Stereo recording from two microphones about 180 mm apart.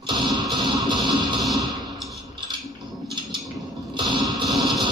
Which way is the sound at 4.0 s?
25° right (ahead or behind).